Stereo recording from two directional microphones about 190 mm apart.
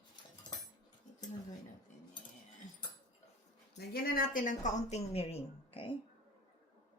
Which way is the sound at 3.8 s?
50° left (ahead or behind).